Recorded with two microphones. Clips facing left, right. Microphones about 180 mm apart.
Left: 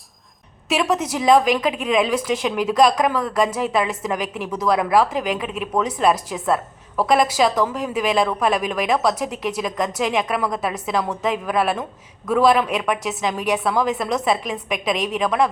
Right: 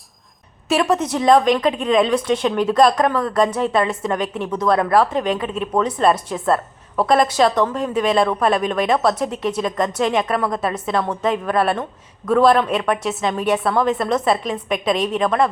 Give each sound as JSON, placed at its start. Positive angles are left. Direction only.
{"t": 0.7, "sound": "a woman's voice", "side_deg": 0}